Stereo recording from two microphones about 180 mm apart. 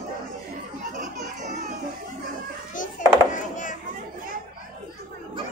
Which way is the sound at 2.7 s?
45° left (ahead or behind).